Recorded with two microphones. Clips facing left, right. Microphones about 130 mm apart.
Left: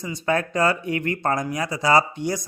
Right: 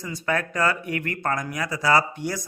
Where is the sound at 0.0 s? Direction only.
20° left (ahead or behind).